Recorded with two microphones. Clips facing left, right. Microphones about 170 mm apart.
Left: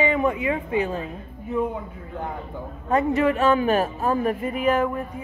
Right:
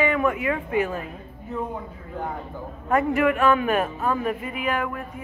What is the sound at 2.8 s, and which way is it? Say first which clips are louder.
A man's voice: even; 25° left (ahead or behind).